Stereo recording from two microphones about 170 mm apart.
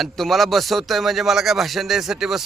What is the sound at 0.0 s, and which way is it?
Speech, centre (ahead or behind).